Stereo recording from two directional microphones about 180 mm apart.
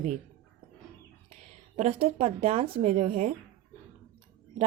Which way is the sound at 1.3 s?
35° right (ahead or behind).